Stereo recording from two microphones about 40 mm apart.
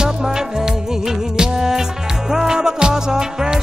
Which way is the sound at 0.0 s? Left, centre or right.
Centre.